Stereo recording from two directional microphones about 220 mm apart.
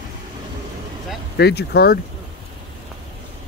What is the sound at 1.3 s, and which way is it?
Speech, 50° left (ahead or behind).